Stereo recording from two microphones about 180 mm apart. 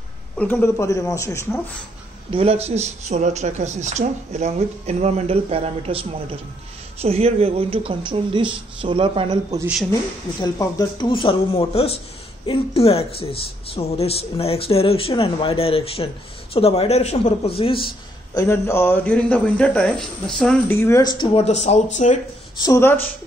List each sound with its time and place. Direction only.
0.4 s a man's voice: 10° left (ahead or behind)
2.3 s a woman's voice: 35° right (ahead or behind)
10.4 s a man's voice: 20° left (ahead or behind)
21.0 s speech: 25° left (ahead or behind)
21.5 s speech: 40° left (ahead or behind)
22.6 s a man's voice: 15° left (ahead or behind)